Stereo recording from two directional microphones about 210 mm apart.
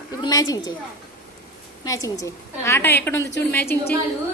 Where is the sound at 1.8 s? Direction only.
15° left (ahead or behind).